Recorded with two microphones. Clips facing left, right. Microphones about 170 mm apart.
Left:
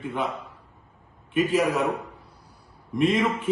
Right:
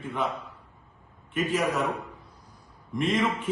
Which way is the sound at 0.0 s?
Centre (ahead or behind).